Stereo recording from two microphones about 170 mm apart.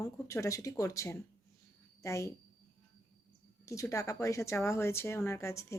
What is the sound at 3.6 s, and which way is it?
Speech, 20° left (ahead or behind).